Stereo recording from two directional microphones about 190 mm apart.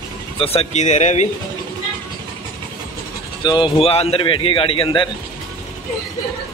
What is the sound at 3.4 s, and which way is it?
A man's voice, 25° left (ahead or behind).